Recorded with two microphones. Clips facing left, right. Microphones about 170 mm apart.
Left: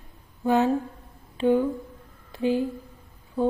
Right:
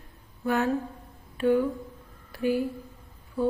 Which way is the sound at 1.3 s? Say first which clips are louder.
Left 2 dB; 20° left (ahead or behind).